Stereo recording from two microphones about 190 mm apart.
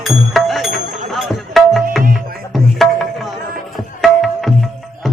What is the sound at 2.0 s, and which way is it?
Music, 50° right (ahead or behind).